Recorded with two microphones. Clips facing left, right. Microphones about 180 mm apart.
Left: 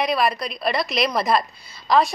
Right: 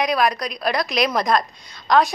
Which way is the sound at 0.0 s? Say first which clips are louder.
Right 1 dB; centre (ahead or behind).